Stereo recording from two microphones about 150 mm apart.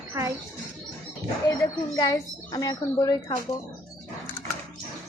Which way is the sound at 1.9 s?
25° left (ahead or behind).